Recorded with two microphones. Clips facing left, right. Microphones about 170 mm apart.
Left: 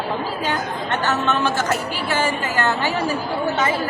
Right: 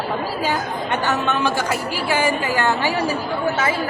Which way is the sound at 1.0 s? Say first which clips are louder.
Left 1 dB; 15° right (ahead or behind).